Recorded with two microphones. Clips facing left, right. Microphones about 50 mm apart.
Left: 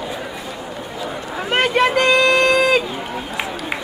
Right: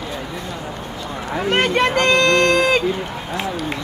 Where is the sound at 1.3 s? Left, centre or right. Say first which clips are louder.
Right 1 dB; centre.